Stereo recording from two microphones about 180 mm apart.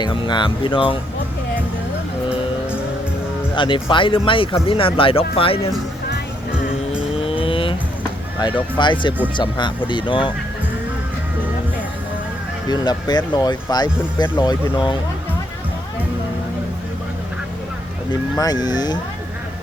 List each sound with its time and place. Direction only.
0.0 s speech: 25° left (ahead or behind)
3.5 s speech: 25° left (ahead or behind)
7.2 s vehicle: 30° left (ahead or behind)
8.4 s speech: 25° left (ahead or behind)
12.6 s speech: 25° left (ahead or behind)
18.3 s speech: 20° left (ahead or behind)